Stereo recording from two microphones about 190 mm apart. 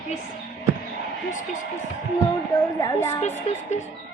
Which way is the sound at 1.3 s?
45° left (ahead or behind).